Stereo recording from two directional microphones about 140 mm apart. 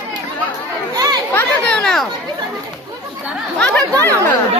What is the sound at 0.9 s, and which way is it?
Children playing, 30° right (ahead or behind).